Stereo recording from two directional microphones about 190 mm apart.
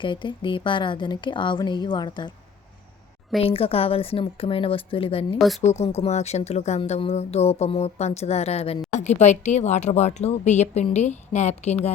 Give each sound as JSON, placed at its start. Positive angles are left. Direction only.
{"t": 0.0, "sound": "a woman's voice", "side_deg": 25}
{"t": 3.4, "sound": "a woman's voice", "side_deg": 30}